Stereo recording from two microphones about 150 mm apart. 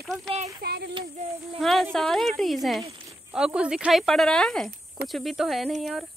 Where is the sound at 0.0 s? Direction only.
Centre (ahead or behind).